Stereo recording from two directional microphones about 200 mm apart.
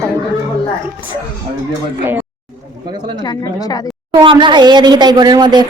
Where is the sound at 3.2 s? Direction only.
20° left (ahead or behind).